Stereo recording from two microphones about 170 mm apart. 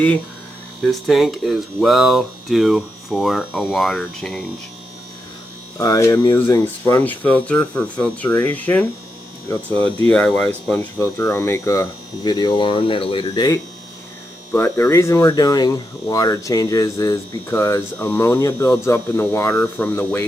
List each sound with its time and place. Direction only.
0.9 s speech: centre (ahead or behind)
5.7 s speech: 20° left (ahead or behind)
14.5 s speech: 15° left (ahead or behind)